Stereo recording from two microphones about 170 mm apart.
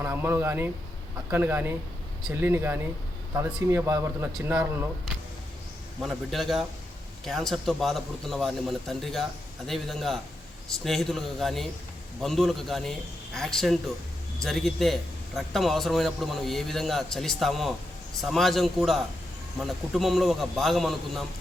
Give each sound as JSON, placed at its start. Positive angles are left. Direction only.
{"t": 0.0, "sound": "speech", "side_deg": -10}
{"t": 6.0, "sound": "a man's voice", "side_deg": 0}